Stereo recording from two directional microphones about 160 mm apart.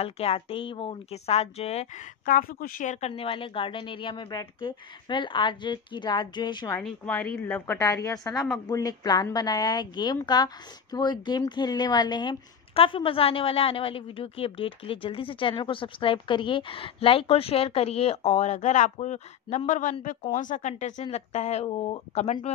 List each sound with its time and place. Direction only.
0.0 s a woman's voice: 40° left (ahead or behind)
2.2 s speech: 60° left (ahead or behind)
3.1 s speech: 35° left (ahead or behind)
6.8 s a woman's voice: 10° left (ahead or behind); by 22.5 s 45° left (ahead or behind)